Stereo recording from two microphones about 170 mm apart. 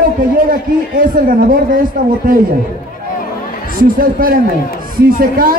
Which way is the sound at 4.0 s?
55° right (ahead or behind).